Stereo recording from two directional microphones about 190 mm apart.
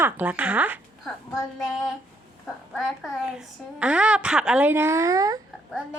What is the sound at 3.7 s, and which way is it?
A woman's voice, 5° right (ahead or behind).